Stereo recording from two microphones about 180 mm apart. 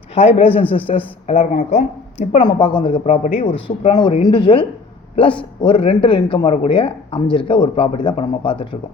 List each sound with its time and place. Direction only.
0.3 s speech: 30° left (ahead or behind)
2.4 s speech: 25° left (ahead or behind)